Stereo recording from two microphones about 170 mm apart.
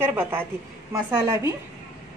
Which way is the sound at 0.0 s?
15° right (ahead or behind).